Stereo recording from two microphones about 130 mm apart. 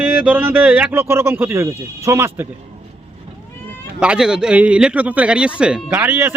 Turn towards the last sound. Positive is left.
turn(degrees=-15)  # may be behind; listen again after turning